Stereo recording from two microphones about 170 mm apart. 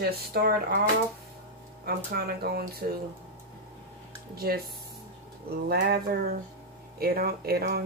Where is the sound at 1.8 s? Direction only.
65° right (ahead or behind).